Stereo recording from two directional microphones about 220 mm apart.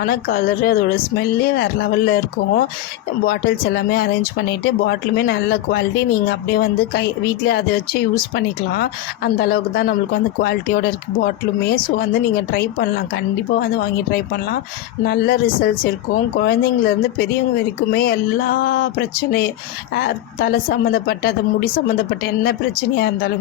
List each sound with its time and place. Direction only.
0.0 s speech: 40° left (ahead or behind)
12.5 s speech: 45° left (ahead or behind)
23.0 s speech: 45° left (ahead or behind)